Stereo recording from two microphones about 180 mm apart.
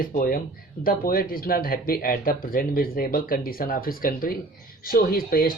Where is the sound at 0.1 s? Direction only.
50° left (ahead or behind).